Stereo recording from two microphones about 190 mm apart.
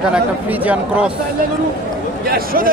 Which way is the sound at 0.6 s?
5° right (ahead or behind).